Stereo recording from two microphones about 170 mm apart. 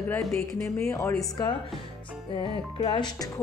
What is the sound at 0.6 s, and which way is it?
Speech, 15° left (ahead or behind).